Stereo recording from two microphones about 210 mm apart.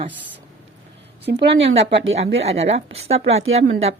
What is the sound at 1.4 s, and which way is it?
Speech, 25° right (ahead or behind).